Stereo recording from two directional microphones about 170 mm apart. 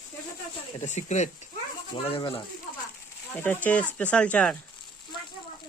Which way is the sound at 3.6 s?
10° left (ahead or behind).